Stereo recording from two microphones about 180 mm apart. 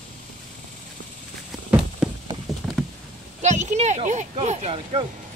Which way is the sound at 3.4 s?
40° right (ahead or behind).